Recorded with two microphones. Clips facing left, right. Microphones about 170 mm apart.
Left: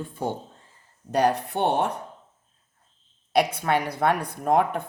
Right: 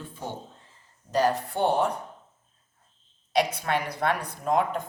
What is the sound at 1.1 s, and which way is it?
Speech, 65° left (ahead or behind).